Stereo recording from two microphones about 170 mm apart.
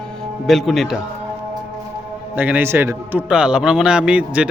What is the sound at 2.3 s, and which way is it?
A man's voice, 10° right (ahead or behind).